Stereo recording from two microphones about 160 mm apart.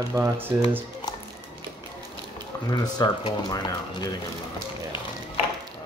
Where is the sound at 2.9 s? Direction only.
25° left (ahead or behind).